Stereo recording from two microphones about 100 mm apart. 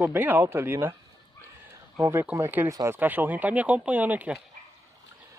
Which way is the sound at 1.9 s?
25° right (ahead or behind).